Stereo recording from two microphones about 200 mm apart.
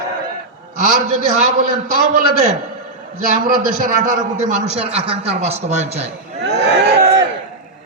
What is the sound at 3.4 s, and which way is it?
A man's voice, 40° right (ahead or behind).